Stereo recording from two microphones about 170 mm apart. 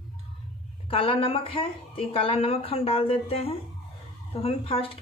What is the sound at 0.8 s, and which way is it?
Speech, 30° left (ahead or behind).